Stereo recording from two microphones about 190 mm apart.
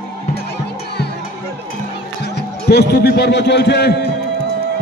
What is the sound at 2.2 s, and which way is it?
A man's voice, 60° left (ahead or behind).